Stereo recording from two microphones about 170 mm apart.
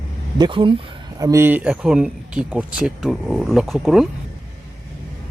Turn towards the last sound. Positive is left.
turn(degrees=0)  # may be behind; listen again after turning